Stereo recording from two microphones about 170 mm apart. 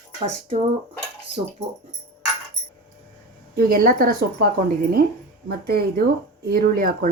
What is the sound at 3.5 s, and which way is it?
Speech, 60° right (ahead or behind).